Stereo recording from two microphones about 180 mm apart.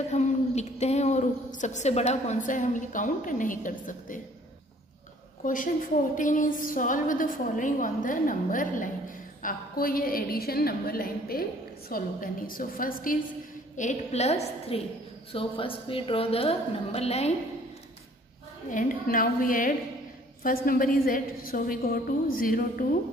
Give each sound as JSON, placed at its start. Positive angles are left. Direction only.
{"t": 0.1, "sound": "a woman's voice", "side_deg": 40}
{"t": 5.4, "sound": "a woman's voice", "side_deg": 50}
{"t": 13.7, "sound": "a woman's voice", "side_deg": 40}
{"t": 18.7, "sound": "a woman's voice", "side_deg": 50}